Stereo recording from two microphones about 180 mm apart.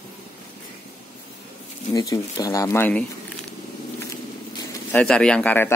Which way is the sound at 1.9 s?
20° left (ahead or behind).